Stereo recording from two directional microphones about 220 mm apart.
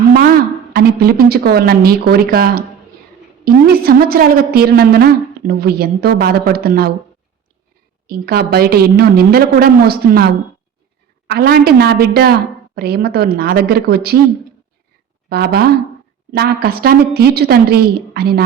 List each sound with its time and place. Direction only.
0.1 s a woman's voice: 45° right (ahead or behind)
8.0 s a woman's voice: 45° right (ahead or behind)
11.3 s a woman's voice: 45° right (ahead or behind)
15.3 s a woman's voice: 45° right (ahead or behind)